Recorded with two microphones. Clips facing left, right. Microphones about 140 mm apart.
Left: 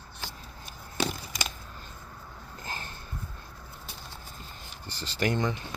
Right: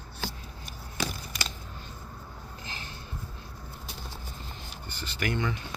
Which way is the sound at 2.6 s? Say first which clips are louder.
Left 5 dB; 50° left (ahead or behind).